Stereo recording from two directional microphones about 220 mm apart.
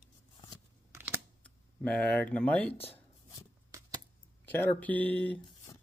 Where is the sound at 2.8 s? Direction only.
25° left (ahead or behind).